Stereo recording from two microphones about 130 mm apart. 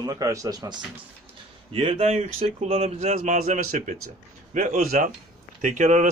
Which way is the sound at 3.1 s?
75° right (ahead or behind).